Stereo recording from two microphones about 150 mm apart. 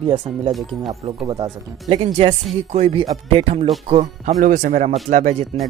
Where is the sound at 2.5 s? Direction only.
45° right (ahead or behind).